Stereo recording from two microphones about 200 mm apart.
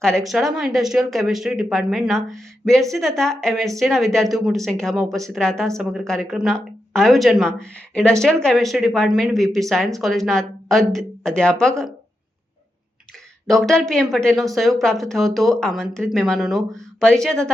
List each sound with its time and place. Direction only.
0.0 s speech: centre (ahead or behind)
13.5 s speech: centre (ahead or behind)